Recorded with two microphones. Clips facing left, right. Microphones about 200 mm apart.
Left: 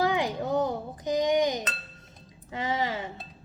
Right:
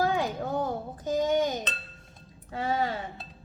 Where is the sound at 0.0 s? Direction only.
15° left (ahead or behind).